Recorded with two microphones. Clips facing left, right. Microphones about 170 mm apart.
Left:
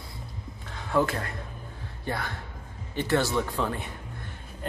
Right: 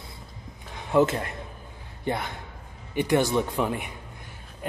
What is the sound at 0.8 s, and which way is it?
A man's voice, 20° right (ahead or behind).